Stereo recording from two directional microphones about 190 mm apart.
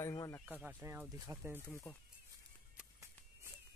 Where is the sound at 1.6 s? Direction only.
10° left (ahead or behind).